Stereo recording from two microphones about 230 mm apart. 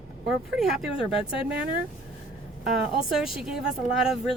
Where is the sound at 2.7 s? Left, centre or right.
Right.